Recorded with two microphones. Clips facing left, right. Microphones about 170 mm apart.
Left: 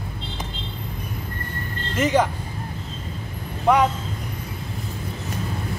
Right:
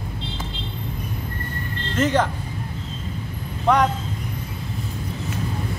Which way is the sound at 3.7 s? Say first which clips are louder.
Left 1 dB; 5° left (ahead or behind).